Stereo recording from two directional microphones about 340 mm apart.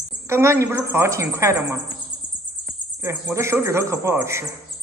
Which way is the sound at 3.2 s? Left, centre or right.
Centre.